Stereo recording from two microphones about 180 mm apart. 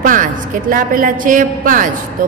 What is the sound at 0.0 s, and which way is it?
Speech, 50° right (ahead or behind).